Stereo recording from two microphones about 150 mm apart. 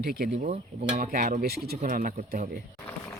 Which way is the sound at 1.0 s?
65° right (ahead or behind).